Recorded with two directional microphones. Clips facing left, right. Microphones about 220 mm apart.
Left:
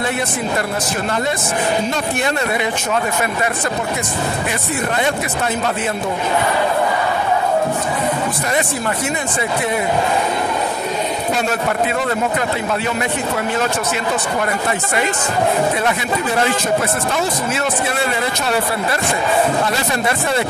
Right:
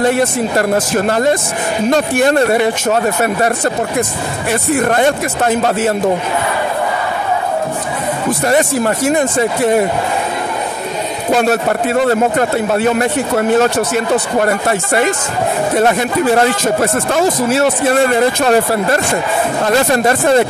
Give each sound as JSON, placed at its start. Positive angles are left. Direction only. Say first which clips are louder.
{"t": 1.0, "sound": "speech", "louder": "right 6 dB", "side_deg": -40}
{"t": 4.5, "sound": "speech", "louder": "right 7 dB", "side_deg": -50}
{"t": 8.5, "sound": "speech", "louder": "right 9 dB", "side_deg": -45}
{"t": 11.9, "sound": "speech", "louder": "right 7 dB", "side_deg": -45}
{"t": 17.5, "sound": "speech", "louder": "right 8 dB", "side_deg": -40}